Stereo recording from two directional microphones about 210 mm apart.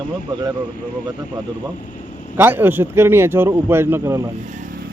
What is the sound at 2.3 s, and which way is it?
A man's voice, 10° right (ahead or behind).